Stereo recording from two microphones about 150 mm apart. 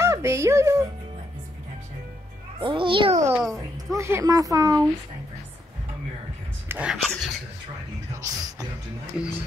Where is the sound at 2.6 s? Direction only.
35° right (ahead or behind).